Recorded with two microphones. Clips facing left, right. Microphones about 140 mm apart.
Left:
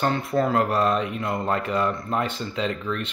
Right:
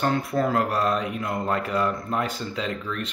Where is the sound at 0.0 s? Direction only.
Centre (ahead or behind).